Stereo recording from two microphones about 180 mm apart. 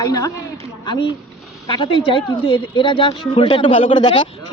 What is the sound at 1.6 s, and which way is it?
A woman's voice, 25° left (ahead or behind).